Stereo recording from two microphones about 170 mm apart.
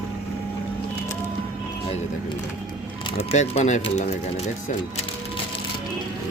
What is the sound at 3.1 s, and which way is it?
Speech, 35° left (ahead or behind).